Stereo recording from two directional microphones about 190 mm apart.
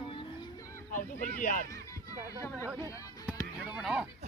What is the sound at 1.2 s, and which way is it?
Speech, 45° left (ahead or behind).